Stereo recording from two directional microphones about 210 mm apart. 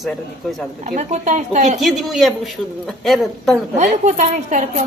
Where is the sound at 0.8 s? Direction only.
35° right (ahead or behind).